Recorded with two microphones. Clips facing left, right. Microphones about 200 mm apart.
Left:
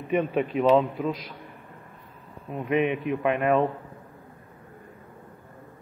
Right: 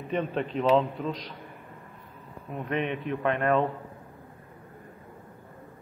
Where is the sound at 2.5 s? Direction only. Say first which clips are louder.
Left 5 dB; 10° left (ahead or behind).